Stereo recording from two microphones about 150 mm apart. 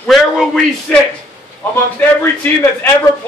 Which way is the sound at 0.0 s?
Centre (ahead or behind).